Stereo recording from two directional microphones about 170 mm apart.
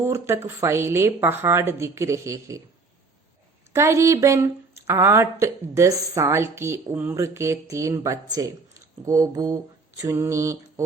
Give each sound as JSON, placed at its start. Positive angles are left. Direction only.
{"t": 0.0, "sound": "a woman's voice", "side_deg": -15}
{"t": 3.7, "sound": "a woman's voice", "side_deg": -15}